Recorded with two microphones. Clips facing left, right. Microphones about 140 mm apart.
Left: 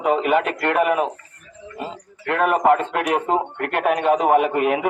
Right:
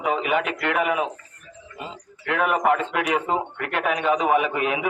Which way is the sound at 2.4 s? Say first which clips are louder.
Left 4 dB; 50° left (ahead or behind).